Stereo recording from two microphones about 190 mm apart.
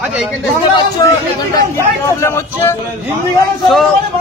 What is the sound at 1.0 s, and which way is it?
A man's voice, 20° left (ahead or behind).